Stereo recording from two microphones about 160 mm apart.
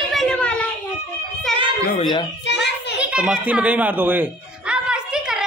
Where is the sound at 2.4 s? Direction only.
90° left.